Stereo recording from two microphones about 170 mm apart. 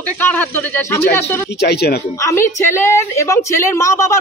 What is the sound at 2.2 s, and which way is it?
A woman's voice, 15° left (ahead or behind).